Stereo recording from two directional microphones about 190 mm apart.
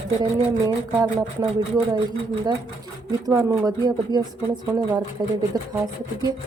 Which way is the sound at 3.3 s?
20° right (ahead or behind).